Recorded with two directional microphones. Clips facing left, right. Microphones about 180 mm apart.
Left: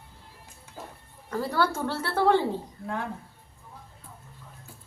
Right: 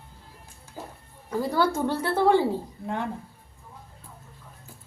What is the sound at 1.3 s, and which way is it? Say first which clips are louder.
A woman's voice: right 2 dB; 15° right (ahead or behind).